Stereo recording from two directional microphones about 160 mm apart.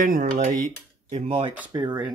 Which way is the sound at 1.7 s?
25° right (ahead or behind).